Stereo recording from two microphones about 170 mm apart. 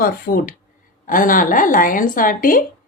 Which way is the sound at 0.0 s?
55° left (ahead or behind).